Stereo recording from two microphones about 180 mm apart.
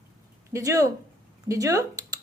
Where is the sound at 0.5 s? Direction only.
15° right (ahead or behind).